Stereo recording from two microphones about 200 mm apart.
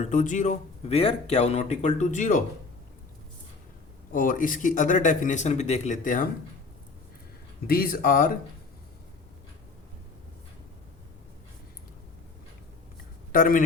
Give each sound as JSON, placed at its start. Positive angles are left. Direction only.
{"t": 0.0, "sound": "speech", "side_deg": 40}
{"t": 4.1, "sound": "speech", "side_deg": 45}
{"t": 7.7, "sound": "speech", "side_deg": 50}
{"t": 13.3, "sound": "speech", "side_deg": 45}